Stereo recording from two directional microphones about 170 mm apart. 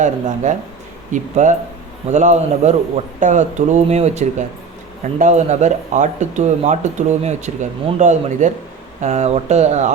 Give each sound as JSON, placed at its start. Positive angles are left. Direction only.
{"t": 0.0, "sound": "speech", "side_deg": -45}